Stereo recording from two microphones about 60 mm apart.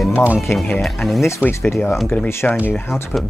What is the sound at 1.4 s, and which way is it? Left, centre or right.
Speech, left.